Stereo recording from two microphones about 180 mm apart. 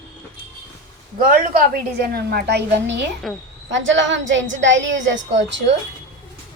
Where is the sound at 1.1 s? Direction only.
50° right (ahead or behind).